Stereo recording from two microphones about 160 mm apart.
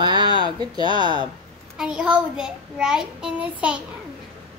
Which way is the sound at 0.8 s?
30° right (ahead or behind).